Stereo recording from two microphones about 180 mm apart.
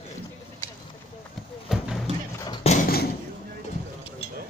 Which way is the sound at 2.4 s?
25° left (ahead or behind).